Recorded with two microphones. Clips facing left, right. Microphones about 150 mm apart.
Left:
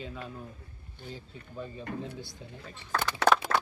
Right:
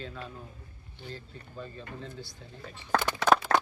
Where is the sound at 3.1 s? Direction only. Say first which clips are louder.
Left 1 dB; 75° left (ahead or behind).